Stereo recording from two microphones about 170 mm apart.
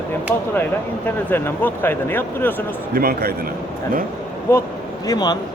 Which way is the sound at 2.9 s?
65° right (ahead or behind).